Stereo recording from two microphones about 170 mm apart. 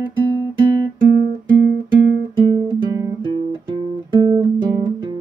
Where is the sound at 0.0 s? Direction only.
25° right (ahead or behind).